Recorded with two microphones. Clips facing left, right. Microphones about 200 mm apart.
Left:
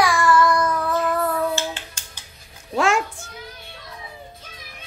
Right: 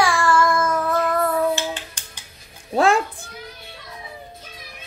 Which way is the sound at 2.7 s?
35° right (ahead or behind).